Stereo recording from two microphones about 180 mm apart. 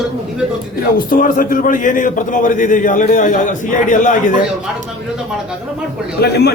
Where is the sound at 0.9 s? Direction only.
50° left (ahead or behind).